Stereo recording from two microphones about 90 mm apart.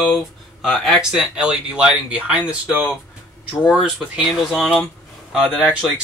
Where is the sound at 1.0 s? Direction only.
10° right (ahead or behind).